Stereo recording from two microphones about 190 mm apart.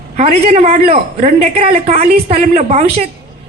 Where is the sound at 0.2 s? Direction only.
35° right (ahead or behind).